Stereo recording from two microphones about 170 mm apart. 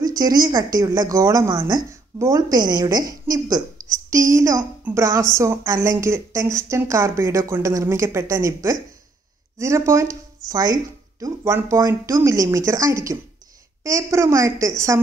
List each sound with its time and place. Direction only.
0.0 s a woman's voice: 20° right (ahead or behind)